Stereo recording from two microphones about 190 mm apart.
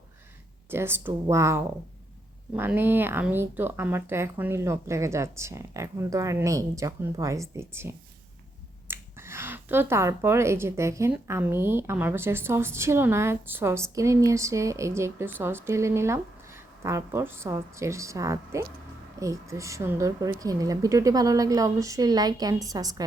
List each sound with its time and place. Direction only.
0.7 s a woman's voice: 10° right (ahead or behind)